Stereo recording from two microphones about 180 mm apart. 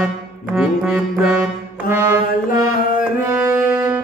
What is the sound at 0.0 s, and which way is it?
Music, 5° right (ahead or behind).